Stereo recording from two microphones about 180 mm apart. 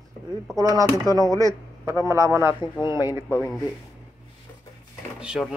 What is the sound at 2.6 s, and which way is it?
Speech, 25° left (ahead or behind).